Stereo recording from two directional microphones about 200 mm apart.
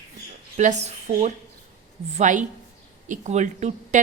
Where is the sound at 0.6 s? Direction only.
35° right (ahead or behind).